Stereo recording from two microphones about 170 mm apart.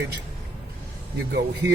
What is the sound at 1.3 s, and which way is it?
Speech, 90° right.